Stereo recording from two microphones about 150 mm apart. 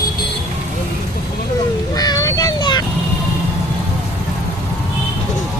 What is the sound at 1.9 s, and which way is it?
Vehicle, 25° left (ahead or behind).